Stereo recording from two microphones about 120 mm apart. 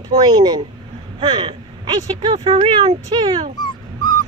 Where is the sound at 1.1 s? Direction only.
45° right (ahead or behind).